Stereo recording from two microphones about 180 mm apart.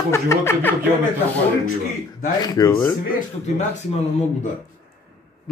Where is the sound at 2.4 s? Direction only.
20° left (ahead or behind).